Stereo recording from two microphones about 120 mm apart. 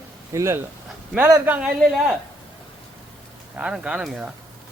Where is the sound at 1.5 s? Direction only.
10° right (ahead or behind).